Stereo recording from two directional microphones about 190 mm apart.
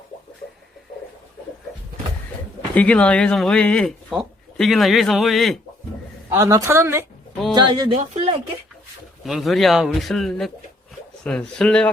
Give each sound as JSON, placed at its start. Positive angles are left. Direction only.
{"t": 2.7, "sound": "speech", "side_deg": 5}
{"t": 6.3, "sound": "a woman's voice", "side_deg": -15}
{"t": 7.9, "sound": "speech", "side_deg": -35}
{"t": 9.2, "sound": "speech", "side_deg": 0}